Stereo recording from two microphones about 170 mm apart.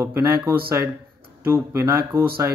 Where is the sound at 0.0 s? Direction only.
15° right (ahead or behind).